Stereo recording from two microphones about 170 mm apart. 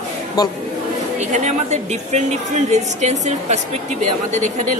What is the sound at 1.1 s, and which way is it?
A woman's voice, 45° right (ahead or behind).